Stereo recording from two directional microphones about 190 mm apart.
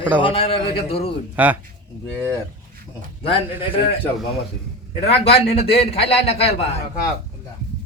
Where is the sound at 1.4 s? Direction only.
10° right (ahead or behind).